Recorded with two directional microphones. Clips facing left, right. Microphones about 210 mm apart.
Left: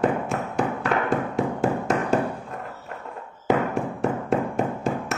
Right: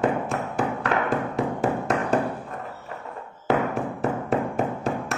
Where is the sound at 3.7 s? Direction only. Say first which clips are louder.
Left 1 dB; centre (ahead or behind).